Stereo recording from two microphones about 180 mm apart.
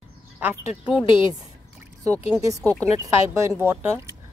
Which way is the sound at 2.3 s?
15° right (ahead or behind).